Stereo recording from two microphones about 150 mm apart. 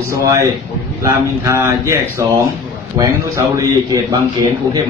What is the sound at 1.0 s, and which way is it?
A man's voice, 20° right (ahead or behind).